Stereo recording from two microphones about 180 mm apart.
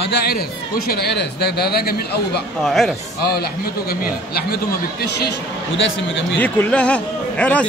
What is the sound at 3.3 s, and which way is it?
Speech, 60° left (ahead or behind).